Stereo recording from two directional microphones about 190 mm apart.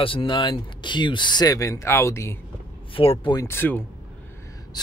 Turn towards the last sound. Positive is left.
turn(degrees=10)  # may be behind; listen again after turning